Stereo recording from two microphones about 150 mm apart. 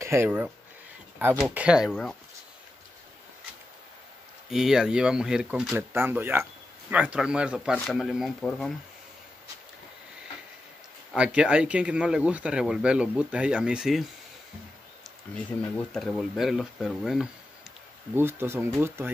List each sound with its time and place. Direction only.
0.0 s speech: 15° right (ahead or behind); by 2.1 s centre (ahead or behind)
4.5 s speech: 5° right (ahead or behind)
11.1 s speech: 5° right (ahead or behind)
15.9 s speech: 5° left (ahead or behind)
18.1 s speech: 15° right (ahead or behind)